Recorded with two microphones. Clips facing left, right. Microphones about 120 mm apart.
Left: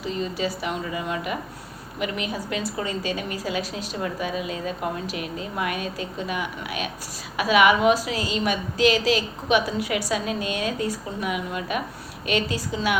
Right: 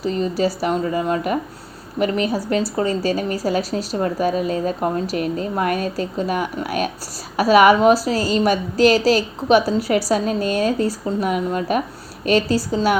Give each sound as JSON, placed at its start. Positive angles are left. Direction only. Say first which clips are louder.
{"t": 0.0, "sound": "a woman's voice", "louder": "right 7 dB", "side_deg": -40}